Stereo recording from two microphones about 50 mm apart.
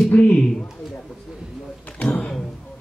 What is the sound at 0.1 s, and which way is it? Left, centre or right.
Speech, left.